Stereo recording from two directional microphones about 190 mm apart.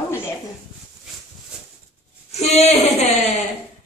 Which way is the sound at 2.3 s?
35° left (ahead or behind).